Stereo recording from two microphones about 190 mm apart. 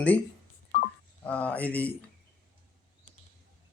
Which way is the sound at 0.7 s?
50° left (ahead or behind).